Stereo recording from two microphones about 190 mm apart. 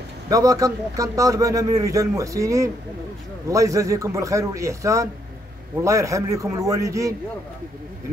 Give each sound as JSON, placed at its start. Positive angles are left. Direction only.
{"t": 0.3, "sound": "a man's voice", "side_deg": -20}